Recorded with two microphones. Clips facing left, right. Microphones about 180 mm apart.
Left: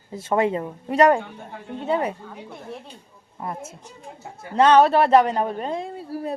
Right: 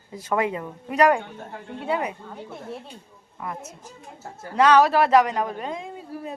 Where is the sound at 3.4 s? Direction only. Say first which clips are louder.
Left 2 dB; 30° left (ahead or behind).